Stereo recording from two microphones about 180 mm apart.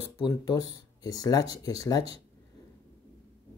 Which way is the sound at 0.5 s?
20° left (ahead or behind).